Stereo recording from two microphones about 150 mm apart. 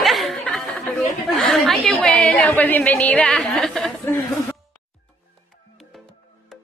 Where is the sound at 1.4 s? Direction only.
5° left (ahead or behind).